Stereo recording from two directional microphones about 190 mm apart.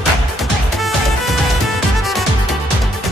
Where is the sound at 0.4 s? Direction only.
Centre (ahead or behind).